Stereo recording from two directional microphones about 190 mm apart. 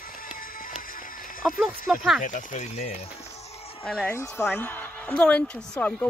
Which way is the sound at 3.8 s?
10° left (ahead or behind).